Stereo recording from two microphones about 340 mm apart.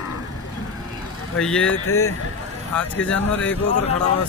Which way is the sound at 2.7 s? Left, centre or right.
Centre.